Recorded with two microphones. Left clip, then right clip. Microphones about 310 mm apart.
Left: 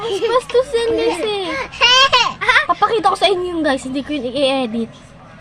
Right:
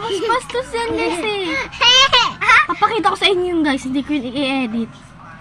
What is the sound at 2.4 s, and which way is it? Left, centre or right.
Speech, centre.